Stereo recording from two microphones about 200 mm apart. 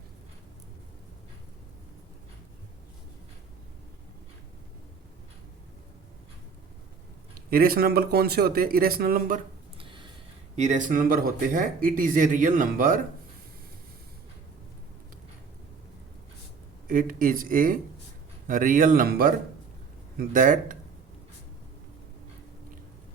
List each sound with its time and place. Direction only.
7.5 s speech: 50° right (ahead or behind)
9.7 s a sound: 25° right (ahead or behind)
10.5 s speech: 35° right (ahead or behind)
16.8 s speech: 45° right (ahead or behind)